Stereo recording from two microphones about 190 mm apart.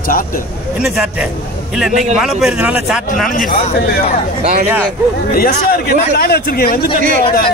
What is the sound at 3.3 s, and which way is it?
Speech, 50° left (ahead or behind).